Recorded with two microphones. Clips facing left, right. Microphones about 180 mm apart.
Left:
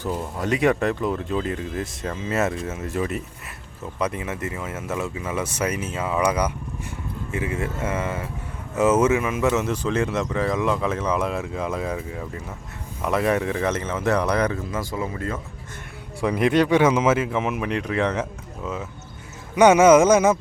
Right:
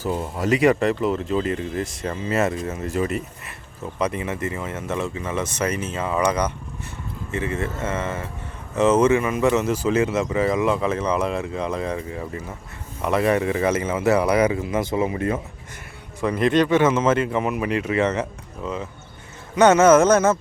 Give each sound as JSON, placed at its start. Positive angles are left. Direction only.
{"t": 0.3, "sound": "speech", "side_deg": 0}
{"t": 14.7, "sound": "speech", "side_deg": -20}
{"t": 16.2, "sound": "speech", "side_deg": 10}